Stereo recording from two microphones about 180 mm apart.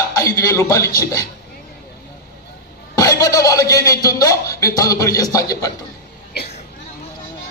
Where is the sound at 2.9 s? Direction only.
20° left (ahead or behind).